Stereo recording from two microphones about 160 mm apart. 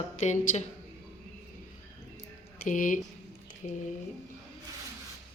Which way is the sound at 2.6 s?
55° left (ahead or behind).